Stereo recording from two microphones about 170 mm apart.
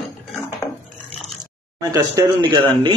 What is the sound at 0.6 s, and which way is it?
Dog, 15° left (ahead or behind).